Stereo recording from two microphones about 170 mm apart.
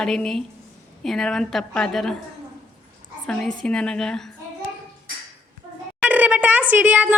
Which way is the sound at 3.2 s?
5° left (ahead or behind).